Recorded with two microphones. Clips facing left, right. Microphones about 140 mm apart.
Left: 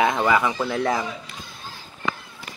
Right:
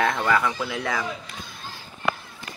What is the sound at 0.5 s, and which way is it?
Speech, 40° left (ahead or behind).